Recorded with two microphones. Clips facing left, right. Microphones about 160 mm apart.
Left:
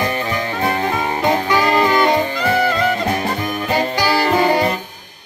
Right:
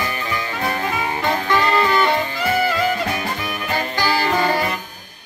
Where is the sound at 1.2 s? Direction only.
15° left (ahead or behind).